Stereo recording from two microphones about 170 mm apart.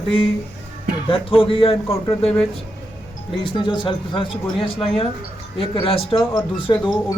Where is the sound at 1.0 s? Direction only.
30° left (ahead or behind).